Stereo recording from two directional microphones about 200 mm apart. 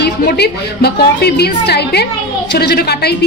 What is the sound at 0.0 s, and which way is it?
A woman's voice, 50° left (ahead or behind).